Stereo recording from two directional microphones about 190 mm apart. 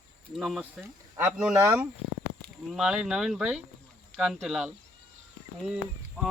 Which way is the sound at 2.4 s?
Centre (ahead or behind).